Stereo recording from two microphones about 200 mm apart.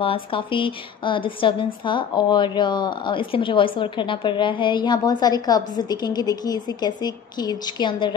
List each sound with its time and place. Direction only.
0.0 s a woman's voice: 25° left (ahead or behind)